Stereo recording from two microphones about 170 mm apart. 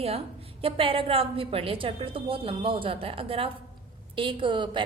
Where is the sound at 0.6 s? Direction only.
30° right (ahead or behind).